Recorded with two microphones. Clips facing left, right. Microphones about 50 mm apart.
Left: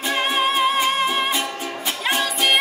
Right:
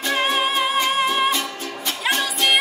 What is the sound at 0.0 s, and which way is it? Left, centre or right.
Music, centre.